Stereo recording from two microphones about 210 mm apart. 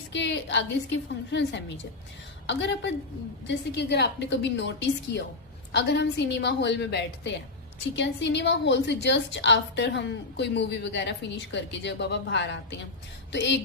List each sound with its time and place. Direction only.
0.1 s a woman's voice: 55° left (ahead or behind)